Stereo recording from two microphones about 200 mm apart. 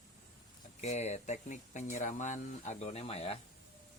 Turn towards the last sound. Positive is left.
turn(degrees=30)  # may be behind; listen again after turning